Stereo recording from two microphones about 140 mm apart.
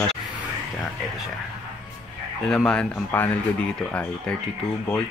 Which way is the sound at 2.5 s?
5° left (ahead or behind).